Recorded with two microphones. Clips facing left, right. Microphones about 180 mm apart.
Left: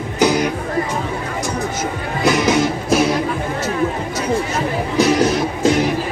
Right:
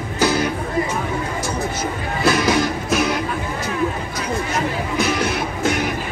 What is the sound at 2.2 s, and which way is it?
Music, 20° left (ahead or behind).